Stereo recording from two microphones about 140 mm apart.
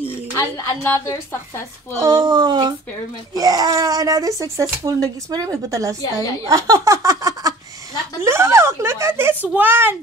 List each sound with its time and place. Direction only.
0.4 s speech: 20° left (ahead or behind)
2.0 s speech: 30° right (ahead or behind)
6.5 s a sound: 25° right (ahead or behind)
9.5 s a woman's voice: 15° right (ahead or behind)